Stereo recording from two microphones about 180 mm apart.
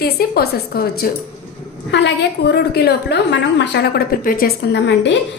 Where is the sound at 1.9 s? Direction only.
80° left.